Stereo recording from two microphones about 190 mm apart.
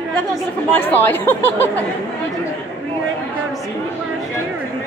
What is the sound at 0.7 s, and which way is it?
A woman's voice, 10° left (ahead or behind).